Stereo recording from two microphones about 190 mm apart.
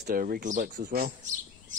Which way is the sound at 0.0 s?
45° right (ahead or behind).